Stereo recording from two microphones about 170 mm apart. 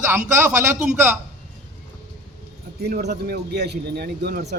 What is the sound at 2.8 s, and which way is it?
A man's voice, 70° right (ahead or behind).